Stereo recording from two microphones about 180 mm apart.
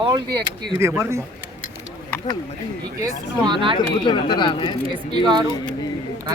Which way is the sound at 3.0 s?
25° right (ahead or behind).